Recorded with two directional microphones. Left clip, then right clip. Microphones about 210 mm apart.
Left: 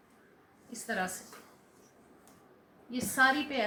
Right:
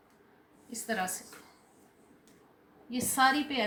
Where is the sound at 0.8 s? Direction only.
45° right (ahead or behind).